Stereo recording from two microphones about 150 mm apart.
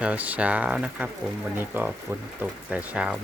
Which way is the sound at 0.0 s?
10° right (ahead or behind).